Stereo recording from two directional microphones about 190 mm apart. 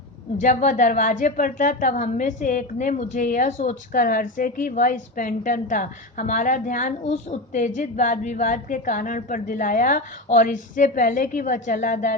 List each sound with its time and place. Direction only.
0.3 s a woman's voice: 40° left (ahead or behind)